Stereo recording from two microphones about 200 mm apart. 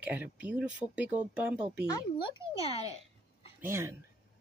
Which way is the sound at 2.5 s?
20° right (ahead or behind).